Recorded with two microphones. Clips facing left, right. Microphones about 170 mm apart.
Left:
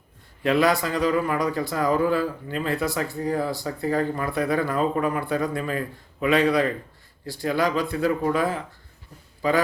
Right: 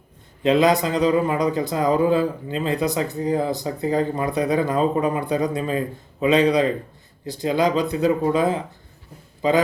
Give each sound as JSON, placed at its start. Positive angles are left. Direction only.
{"t": 0.4, "sound": "a man's voice", "side_deg": -20}